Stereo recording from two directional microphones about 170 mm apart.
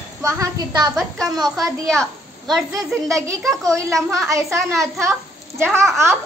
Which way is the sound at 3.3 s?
20° right (ahead or behind).